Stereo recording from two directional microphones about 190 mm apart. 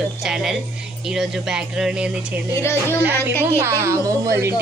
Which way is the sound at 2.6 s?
15° left (ahead or behind).